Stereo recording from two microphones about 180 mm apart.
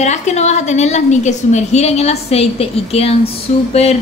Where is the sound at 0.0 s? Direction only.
40° left (ahead or behind).